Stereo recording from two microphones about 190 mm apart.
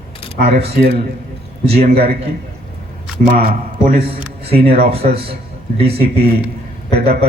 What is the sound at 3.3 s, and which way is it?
Speech, 45° right (ahead or behind).